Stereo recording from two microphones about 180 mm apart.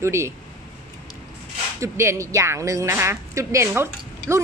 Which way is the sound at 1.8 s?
15° right (ahead or behind).